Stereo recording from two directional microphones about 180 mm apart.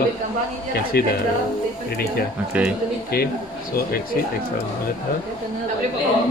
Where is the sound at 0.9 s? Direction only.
60° left (ahead or behind).